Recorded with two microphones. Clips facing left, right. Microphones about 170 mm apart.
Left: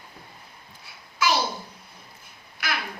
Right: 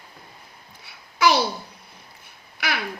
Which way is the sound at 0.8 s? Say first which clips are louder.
Right 5 dB; 70° right (ahead or behind).